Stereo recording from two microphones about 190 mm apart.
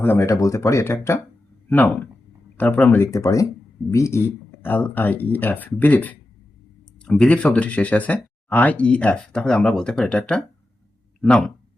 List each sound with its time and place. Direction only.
0.0 s speech: 10° left (ahead or behind)